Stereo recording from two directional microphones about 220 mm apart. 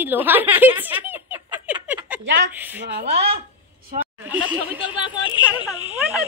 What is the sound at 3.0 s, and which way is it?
Speech, 30° right (ahead or behind).